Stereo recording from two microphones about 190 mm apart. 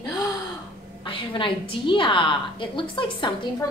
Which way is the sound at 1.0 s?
25° left (ahead or behind).